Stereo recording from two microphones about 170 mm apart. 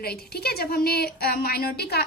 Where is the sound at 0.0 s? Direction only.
65° left (ahead or behind).